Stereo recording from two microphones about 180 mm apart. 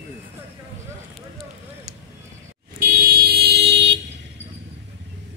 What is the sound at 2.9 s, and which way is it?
Vehicle, 60° right (ahead or behind).